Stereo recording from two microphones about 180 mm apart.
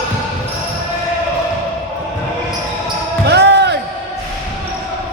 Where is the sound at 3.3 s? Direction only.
70° right (ahead or behind).